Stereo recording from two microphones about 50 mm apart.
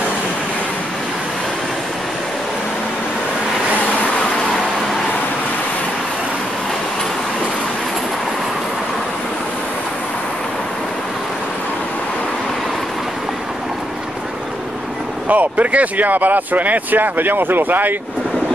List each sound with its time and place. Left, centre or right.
15.2 s speech: right